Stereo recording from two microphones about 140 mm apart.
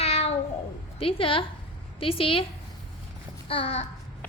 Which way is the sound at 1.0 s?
40° left (ahead or behind).